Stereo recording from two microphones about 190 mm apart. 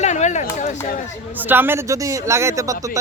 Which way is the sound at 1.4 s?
10° right (ahead or behind).